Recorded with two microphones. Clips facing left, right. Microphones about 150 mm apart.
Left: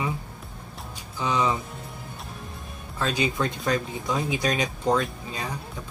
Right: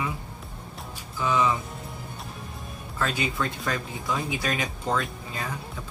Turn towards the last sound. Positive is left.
turn(degrees=20)  # may be behind; listen again after turning